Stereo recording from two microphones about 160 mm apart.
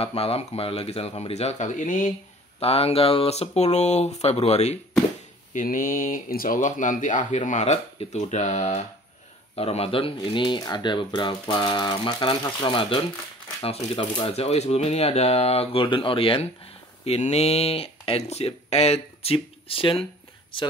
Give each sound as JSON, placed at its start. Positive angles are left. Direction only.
{"t": 0.0, "sound": "speech", "side_deg": 40}
{"t": 2.6, "sound": "speech", "side_deg": 40}
{"t": 5.5, "sound": "speech", "side_deg": 55}